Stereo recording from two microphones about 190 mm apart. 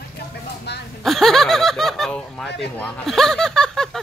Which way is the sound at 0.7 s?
60° left (ahead or behind).